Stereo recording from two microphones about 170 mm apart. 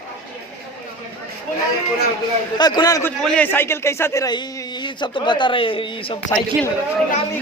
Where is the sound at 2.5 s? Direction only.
25° left (ahead or behind).